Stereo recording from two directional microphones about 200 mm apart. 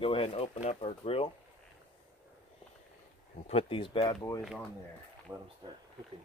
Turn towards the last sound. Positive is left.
turn(degrees=-10)  # may be behind; listen again after turning